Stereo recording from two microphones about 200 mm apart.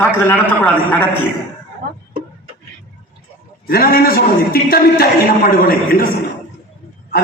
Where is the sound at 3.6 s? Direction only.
50° left (ahead or behind).